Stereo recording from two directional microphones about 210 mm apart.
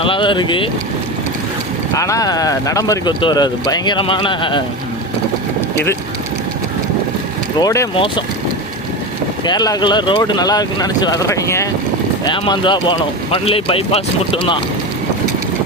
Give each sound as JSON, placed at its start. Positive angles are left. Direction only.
{"t": 0.0, "sound": "speech", "side_deg": 25}
{"t": 1.9, "sound": "speech", "side_deg": 15}
{"t": 7.6, "sound": "speech", "side_deg": 15}
{"t": 9.5, "sound": "speech", "side_deg": 20}